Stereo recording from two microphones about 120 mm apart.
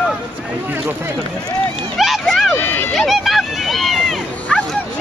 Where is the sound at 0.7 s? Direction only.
15° right (ahead or behind).